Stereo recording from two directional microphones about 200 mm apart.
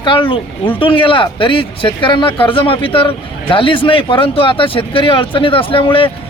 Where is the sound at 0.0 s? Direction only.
25° left (ahead or behind).